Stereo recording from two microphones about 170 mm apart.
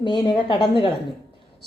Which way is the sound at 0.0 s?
25° left (ahead or behind).